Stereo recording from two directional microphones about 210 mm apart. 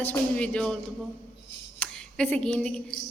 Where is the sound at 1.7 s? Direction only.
5° left (ahead or behind).